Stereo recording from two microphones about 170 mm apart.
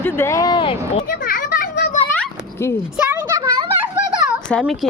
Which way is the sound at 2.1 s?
15° left (ahead or behind).